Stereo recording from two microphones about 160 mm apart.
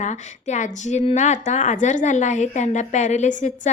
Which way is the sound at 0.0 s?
50° left (ahead or behind).